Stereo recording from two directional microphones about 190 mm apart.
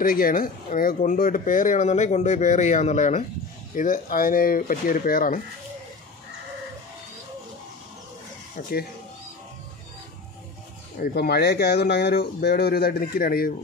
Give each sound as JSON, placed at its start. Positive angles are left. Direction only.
{"t": 0.0, "sound": "speech", "side_deg": 50}
{"t": 8.6, "sound": "speech", "side_deg": 45}
{"t": 11.0, "sound": "speech", "side_deg": 55}